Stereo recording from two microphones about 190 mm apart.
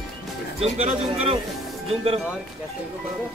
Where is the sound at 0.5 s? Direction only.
35° right (ahead or behind).